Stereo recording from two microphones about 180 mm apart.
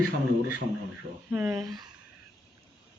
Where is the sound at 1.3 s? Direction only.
15° right (ahead or behind).